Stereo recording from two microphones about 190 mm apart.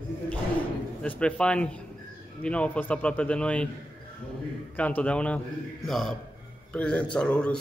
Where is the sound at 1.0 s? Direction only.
5° left (ahead or behind).